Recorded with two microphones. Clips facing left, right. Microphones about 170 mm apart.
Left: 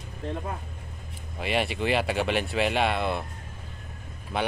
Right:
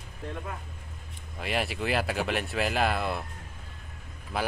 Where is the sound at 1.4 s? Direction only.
Centre (ahead or behind).